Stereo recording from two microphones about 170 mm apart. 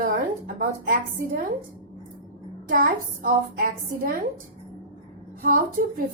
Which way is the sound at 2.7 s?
55° right (ahead or behind).